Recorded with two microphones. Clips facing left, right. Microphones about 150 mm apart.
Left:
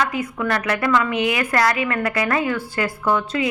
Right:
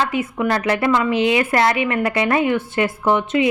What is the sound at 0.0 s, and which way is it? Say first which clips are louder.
A woman's voice: right 2 dB; 25° right (ahead or behind).